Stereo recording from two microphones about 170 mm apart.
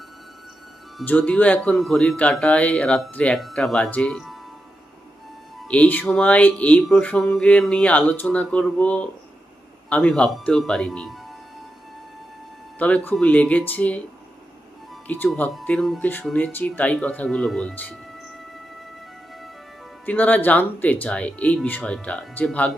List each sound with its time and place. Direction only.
1.0 s speech: 10° left (ahead or behind)
5.6 s a man's voice: 10° left (ahead or behind)
12.8 s speech: 10° left (ahead or behind)
15.0 s a man's voice: 10° left (ahead or behind)
20.1 s speech: 10° left (ahead or behind)